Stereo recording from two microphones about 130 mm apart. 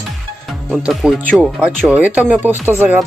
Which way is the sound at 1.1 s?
10° left (ahead or behind).